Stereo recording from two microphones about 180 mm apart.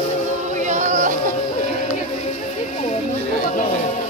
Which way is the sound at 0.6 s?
40° right (ahead or behind).